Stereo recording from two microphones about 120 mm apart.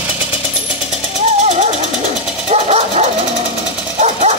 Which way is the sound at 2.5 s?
60° right (ahead or behind).